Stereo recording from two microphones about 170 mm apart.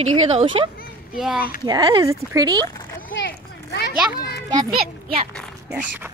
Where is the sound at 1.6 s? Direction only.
25° right (ahead or behind).